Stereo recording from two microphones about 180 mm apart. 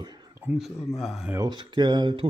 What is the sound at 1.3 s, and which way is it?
Speech, 25° right (ahead or behind).